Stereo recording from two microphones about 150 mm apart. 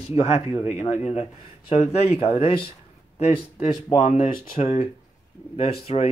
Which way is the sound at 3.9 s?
50° left (ahead or behind).